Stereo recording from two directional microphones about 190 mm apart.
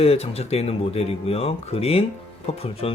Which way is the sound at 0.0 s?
30° left (ahead or behind).